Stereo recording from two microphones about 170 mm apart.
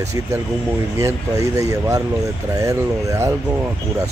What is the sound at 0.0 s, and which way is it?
Speech, 20° right (ahead or behind).